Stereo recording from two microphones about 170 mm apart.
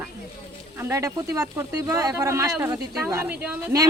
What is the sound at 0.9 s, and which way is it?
Speech, 20° right (ahead or behind).